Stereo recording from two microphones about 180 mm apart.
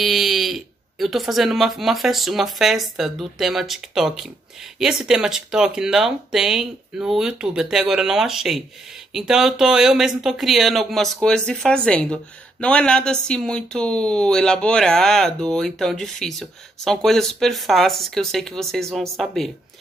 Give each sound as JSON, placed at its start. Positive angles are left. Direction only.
{"t": 0.0, "sound": "speech", "side_deg": 0}